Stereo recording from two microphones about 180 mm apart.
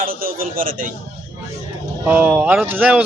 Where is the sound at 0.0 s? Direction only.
55° right (ahead or behind).